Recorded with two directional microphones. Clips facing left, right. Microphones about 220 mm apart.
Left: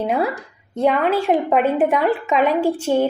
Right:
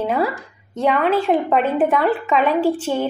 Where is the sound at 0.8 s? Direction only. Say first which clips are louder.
Even; 10° left (ahead or behind).